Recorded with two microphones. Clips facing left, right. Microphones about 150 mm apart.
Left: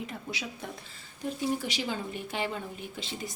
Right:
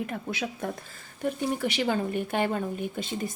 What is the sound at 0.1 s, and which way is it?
A woman's voice, 55° right (ahead or behind).